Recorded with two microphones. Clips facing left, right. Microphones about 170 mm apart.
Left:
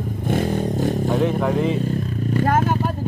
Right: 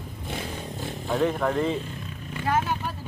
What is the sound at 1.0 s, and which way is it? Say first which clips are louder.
Speech: even; 5° left (ahead or behind).